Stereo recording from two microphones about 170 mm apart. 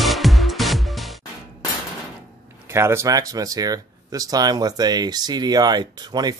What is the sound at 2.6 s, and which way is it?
A man's voice, 15° right (ahead or behind).